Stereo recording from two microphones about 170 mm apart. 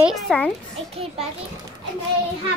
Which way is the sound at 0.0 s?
Centre (ahead or behind).